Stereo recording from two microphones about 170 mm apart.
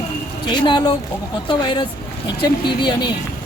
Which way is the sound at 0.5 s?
25° left (ahead or behind).